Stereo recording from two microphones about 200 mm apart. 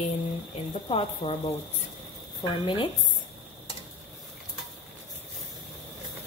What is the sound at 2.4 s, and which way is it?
Speech, 25° left (ahead or behind).